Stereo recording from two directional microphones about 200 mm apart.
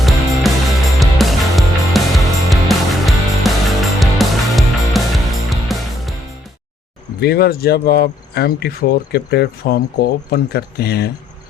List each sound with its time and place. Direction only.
0.0 s music: centre (ahead or behind)
7.2 s speech: 50° left (ahead or behind)